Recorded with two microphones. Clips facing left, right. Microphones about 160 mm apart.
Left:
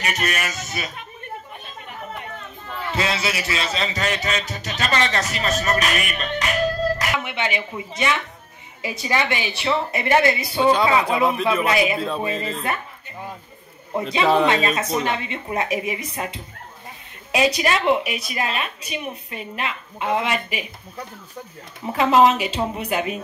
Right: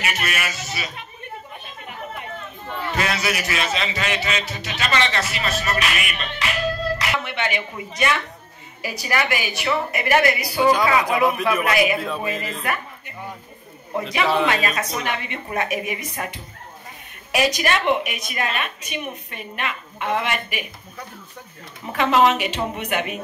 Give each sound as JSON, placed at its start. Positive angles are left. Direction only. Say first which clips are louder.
{"t": 0.0, "sound": "speech", "louder": "left 1 dB", "side_deg": 40}
{"t": 2.9, "sound": "a man's voice", "louder": "even", "side_deg": 25}
{"t": 7.2, "sound": "a woman's voice", "louder": "even", "side_deg": 20}
{"t": 14.4, "sound": "a woman's voice", "louder": "left 2 dB", "side_deg": 25}
{"t": 21.9, "sound": "a woman's voice", "louder": "left 2 dB", "side_deg": 25}